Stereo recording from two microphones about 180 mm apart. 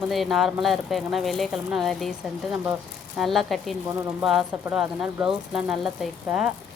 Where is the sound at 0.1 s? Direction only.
Centre (ahead or behind).